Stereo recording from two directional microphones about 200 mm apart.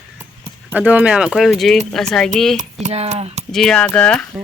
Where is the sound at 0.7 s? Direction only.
10° right (ahead or behind).